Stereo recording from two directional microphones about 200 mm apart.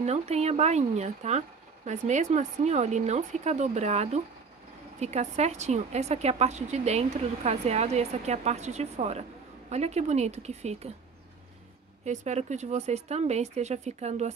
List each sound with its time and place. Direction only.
0.0 s a woman's voice: 35° right (ahead or behind)
12.0 s a woman's voice: 35° right (ahead or behind)